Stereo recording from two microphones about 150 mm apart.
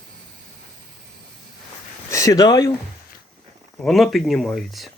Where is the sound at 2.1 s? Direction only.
20° left (ahead or behind).